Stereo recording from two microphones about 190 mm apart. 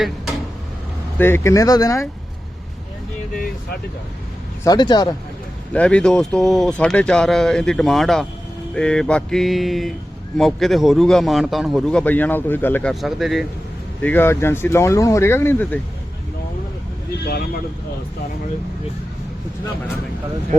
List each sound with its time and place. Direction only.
1.2 s speech: 15° left (ahead or behind)
3.3 s speech: 50° left (ahead or behind)
4.6 s speech: 20° left (ahead or behind)
5.7 s a man's voice: 5° left (ahead or behind)
12.9 s a man's voice: centre (ahead or behind)
14.0 s speech: 10° left (ahead or behind)